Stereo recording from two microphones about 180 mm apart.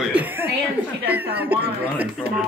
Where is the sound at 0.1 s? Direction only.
10° right (ahead or behind).